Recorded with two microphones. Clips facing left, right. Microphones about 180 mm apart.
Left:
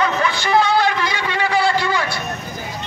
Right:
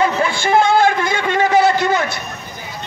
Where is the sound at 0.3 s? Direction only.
50° right (ahead or behind).